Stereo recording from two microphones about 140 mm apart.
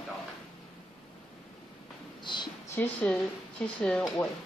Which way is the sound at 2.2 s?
35° left (ahead or behind).